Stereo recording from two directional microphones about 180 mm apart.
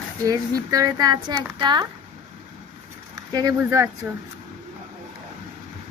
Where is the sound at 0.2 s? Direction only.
20° right (ahead or behind).